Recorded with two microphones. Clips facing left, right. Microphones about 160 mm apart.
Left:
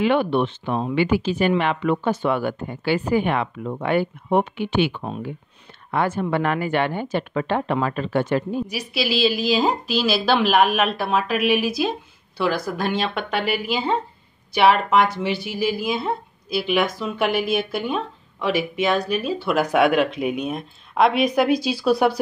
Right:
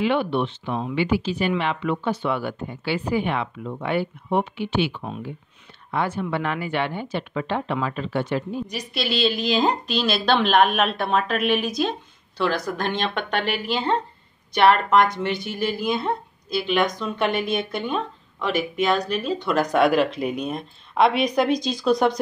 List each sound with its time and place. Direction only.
0.0 s speech: 50° left (ahead or behind)
8.6 s a woman's voice: 5° left (ahead or behind)